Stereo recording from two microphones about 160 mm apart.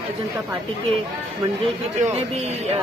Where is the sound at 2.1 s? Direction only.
40° right (ahead or behind).